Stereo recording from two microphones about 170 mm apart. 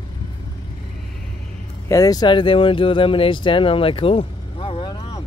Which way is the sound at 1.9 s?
20° left (ahead or behind).